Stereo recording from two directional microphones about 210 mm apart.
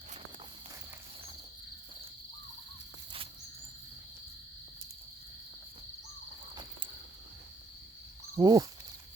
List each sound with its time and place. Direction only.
8.4 s speech: 20° right (ahead or behind)